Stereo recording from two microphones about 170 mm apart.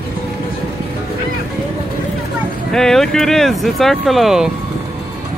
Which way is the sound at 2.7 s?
5° left (ahead or behind).